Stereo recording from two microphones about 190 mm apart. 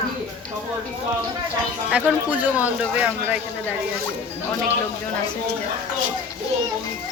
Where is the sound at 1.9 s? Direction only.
5° right (ahead or behind).